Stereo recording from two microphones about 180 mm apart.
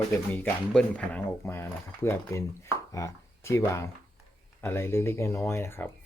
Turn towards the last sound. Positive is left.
turn(degrees=15)  # may be behind; listen again after turning